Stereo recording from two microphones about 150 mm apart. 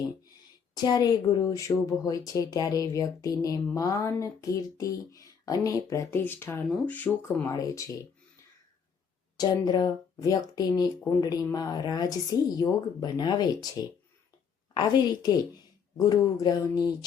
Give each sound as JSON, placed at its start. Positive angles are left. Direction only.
{"t": 0.7, "sound": "speech", "side_deg": 25}
{"t": 7.4, "sound": "speech", "side_deg": 20}
{"t": 9.4, "sound": "a woman's voice", "side_deg": 25}